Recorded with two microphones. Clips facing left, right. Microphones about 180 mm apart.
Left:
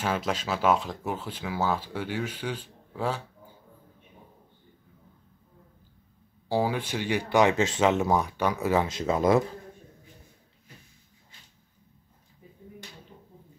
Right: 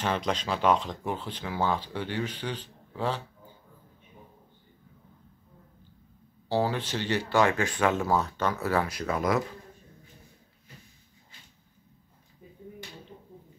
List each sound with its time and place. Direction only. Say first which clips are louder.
0.0 s speech: even; 5° left (ahead or behind)
6.5 s speech: left 1 dB; 10° left (ahead or behind)